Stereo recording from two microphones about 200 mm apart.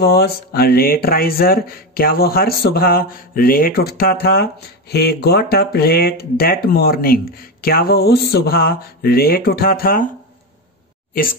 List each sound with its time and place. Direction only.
0.0 s speech: 50° left (ahead or behind)